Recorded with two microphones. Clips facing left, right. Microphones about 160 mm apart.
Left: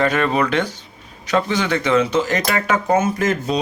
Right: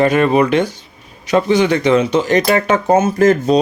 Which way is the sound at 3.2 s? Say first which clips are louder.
Right 8 dB; 35° right (ahead or behind).